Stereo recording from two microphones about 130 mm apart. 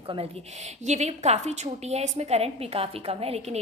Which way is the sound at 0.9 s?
60° right (ahead or behind).